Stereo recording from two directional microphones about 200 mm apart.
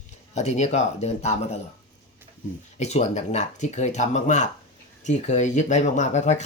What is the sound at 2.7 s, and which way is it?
Speech, 35° left (ahead or behind).